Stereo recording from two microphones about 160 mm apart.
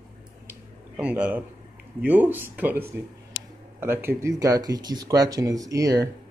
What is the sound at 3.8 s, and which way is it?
Speech, 15° right (ahead or behind).